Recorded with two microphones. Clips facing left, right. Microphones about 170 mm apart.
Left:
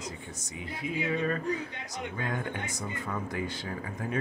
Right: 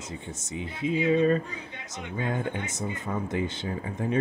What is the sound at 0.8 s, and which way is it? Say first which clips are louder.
Speech: right 8 dB; 25° right (ahead or behind).